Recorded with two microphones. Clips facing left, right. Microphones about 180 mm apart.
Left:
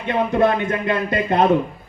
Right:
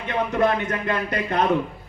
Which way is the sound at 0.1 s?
30° left (ahead or behind).